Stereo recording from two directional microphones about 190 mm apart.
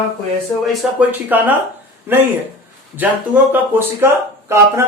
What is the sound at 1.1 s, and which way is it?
Speech, 10° right (ahead or behind).